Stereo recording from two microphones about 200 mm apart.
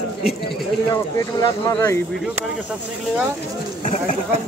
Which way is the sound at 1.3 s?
20° left (ahead or behind).